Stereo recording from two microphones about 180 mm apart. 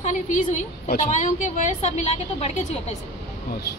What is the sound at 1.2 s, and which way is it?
A woman's voice, 40° left (ahead or behind).